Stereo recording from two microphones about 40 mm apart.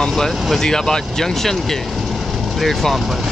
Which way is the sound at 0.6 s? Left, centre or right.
Centre.